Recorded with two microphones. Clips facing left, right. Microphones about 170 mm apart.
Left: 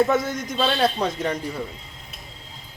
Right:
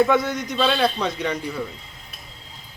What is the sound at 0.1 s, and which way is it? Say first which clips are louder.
A man's voice: right 2 dB; 45° left (ahead or behind).